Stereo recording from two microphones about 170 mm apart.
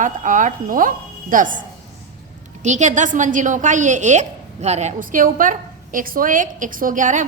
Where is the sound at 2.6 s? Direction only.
45° right (ahead or behind).